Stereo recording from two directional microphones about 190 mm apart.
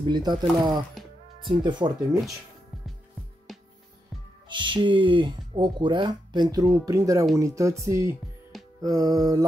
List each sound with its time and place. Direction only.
0.0 s speech: 25° right (ahead or behind)
3.5 s music: centre (ahead or behind)
4.5 s speech: 25° right (ahead or behind)